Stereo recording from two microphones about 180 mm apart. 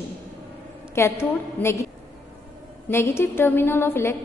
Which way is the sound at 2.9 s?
15° left (ahead or behind).